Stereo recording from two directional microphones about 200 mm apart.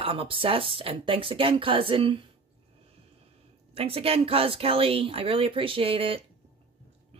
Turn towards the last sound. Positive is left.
turn(degrees=-30)  # may be behind; listen again after turning